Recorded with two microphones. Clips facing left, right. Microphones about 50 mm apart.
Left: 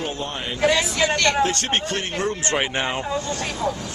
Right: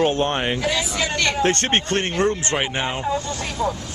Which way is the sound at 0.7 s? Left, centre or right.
Centre.